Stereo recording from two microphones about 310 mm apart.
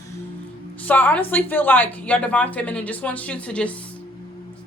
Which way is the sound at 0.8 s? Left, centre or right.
Centre.